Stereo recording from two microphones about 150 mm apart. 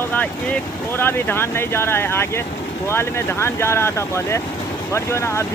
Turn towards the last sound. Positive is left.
turn(degrees=20)  # may be behind; listen again after turning